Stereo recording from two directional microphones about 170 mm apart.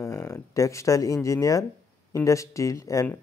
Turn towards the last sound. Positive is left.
turn(degrees=15)  # may be behind; listen again after turning